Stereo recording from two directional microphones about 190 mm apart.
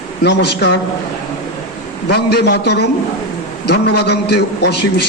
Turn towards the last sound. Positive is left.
turn(degrees=60)  # may be behind; listen again after turning